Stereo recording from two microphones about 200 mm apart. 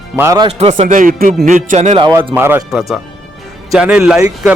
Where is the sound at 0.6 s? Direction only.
35° right (ahead or behind).